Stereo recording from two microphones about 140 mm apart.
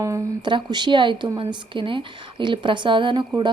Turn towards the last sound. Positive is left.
turn(degrees=-35)  # may be behind; listen again after turning